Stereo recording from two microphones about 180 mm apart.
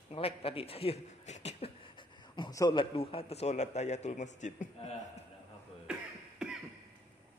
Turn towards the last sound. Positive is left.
turn(degrees=-5)  # may be behind; listen again after turning